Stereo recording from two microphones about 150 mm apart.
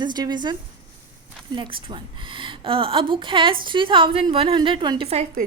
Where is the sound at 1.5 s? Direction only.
35° right (ahead or behind).